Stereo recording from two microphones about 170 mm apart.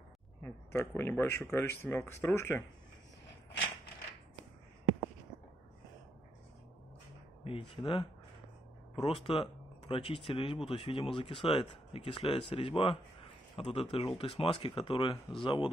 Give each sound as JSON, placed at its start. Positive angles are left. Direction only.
{"t": 0.4, "sound": "speech", "side_deg": 15}
{"t": 7.4, "sound": "speech", "side_deg": 30}